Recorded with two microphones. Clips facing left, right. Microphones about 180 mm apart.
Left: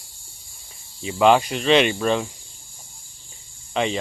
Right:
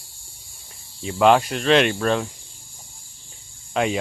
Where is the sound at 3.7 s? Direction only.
5° right (ahead or behind).